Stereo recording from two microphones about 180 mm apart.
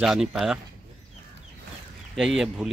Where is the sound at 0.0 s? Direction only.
Centre (ahead or behind).